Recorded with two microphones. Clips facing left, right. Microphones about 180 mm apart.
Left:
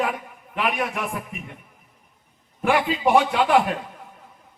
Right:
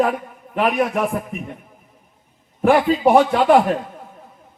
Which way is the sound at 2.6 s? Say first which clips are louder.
Right 6 dB; 40° right (ahead or behind).